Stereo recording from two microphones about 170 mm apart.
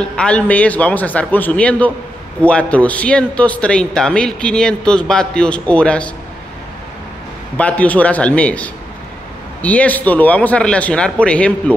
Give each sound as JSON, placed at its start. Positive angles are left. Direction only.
{"t": 0.0, "sound": "a man's voice", "side_deg": 5}
{"t": 7.5, "sound": "a man's voice", "side_deg": 10}